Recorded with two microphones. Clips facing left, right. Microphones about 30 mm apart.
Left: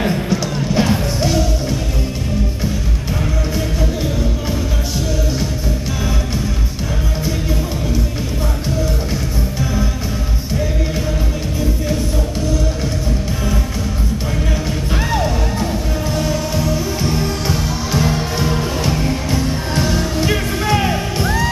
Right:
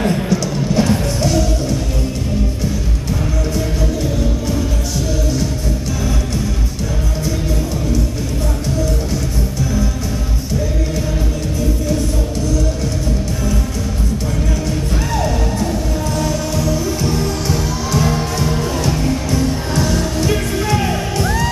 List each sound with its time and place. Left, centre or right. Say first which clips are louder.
0.0 s music: right 1 dB; centre
15.1 s music: right 2 dB; centre